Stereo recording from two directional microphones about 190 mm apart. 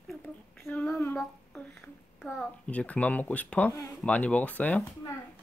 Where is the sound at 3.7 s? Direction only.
20° left (ahead or behind).